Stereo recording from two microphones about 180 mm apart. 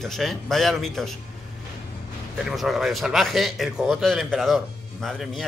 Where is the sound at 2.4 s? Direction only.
Centre (ahead or behind).